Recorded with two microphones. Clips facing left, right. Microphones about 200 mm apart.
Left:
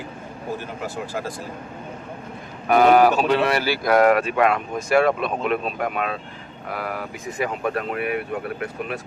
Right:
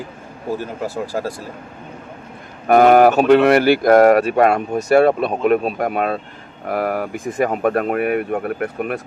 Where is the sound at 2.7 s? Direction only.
50° right (ahead or behind).